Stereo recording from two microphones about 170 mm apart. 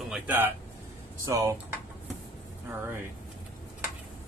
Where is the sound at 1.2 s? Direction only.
20° right (ahead or behind).